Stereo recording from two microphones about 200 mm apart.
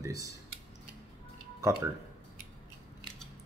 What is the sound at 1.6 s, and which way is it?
Speech, 15° right (ahead or behind).